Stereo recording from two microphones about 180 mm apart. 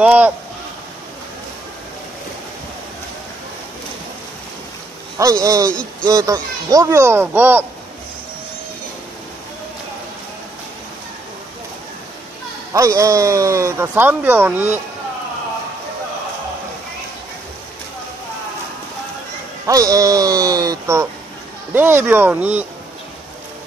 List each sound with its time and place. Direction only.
0.0 s speech: 10° right (ahead or behind)
5.1 s speech: 20° right (ahead or behind)
5.7 s speech: 5° left (ahead or behind)
6.0 s speech: 20° right (ahead or behind)
12.7 s speech: 20° right (ahead or behind)
19.6 s speech: 20° right (ahead or behind)